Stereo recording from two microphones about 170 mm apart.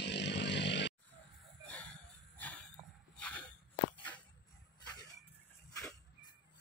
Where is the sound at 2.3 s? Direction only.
10° left (ahead or behind).